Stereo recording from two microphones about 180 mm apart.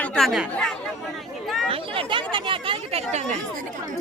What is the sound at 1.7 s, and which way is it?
Speech, 30° right (ahead or behind).